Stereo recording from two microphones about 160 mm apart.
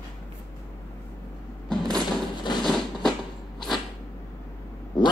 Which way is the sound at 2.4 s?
30° left (ahead or behind).